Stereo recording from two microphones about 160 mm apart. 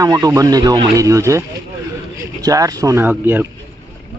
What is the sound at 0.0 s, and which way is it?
Speech, 20° right (ahead or behind).